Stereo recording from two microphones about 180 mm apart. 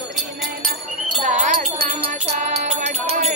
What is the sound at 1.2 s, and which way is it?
Wind chime, 40° right (ahead or behind).